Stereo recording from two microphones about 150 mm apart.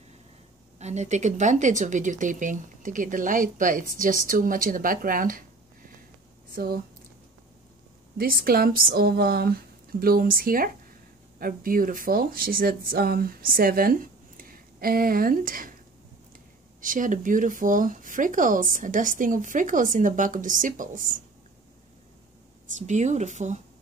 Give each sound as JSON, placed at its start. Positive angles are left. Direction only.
{"t": 0.7, "sound": "speech", "side_deg": -50}
{"t": 6.5, "sound": "speech", "side_deg": -80}
{"t": 8.2, "sound": "speech", "side_deg": -80}
{"t": 16.8, "sound": "speech", "side_deg": -60}
{"t": 22.8, "sound": "speech", "side_deg": -50}